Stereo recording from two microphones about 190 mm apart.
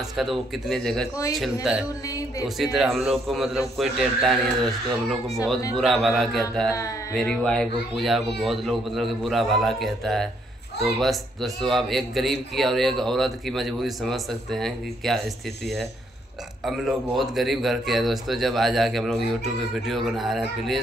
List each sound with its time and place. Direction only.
0.2 s a man's voice: centre (ahead or behind)
5.8 s a man's voice: centre (ahead or behind)
16.6 s a man's voice: centre (ahead or behind)